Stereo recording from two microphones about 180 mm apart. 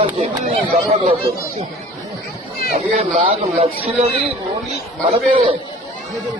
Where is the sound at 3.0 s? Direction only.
35° right (ahead or behind).